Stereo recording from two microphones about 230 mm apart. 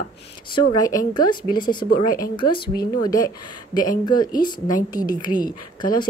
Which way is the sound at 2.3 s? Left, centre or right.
Left.